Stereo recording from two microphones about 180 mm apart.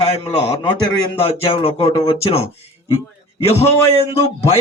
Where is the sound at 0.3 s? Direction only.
35° left (ahead or behind).